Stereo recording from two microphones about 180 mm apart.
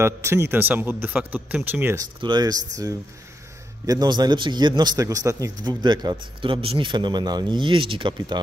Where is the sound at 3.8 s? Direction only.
20° right (ahead or behind).